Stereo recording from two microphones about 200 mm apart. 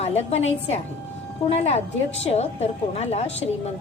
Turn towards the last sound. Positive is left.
turn(degrees=30)  # may be behind; listen again after turning